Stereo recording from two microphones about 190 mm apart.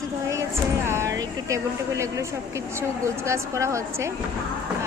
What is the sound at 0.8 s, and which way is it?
Speech, 15° right (ahead or behind).